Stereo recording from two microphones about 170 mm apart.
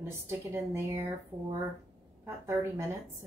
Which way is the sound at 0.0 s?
15° right (ahead or behind).